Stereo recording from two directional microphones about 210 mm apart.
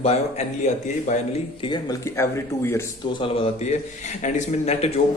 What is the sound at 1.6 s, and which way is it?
Speech, 20° left (ahead or behind).